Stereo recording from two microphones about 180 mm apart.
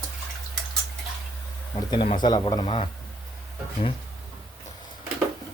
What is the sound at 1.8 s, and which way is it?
Speech, 25° left (ahead or behind).